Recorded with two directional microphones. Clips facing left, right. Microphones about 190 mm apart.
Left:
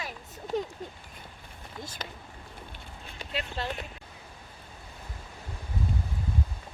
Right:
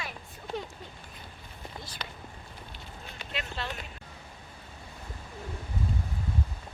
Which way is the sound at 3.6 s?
40° left (ahead or behind).